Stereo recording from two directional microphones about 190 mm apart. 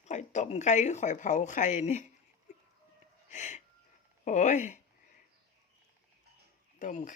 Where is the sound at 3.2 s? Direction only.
40° left (ahead or behind).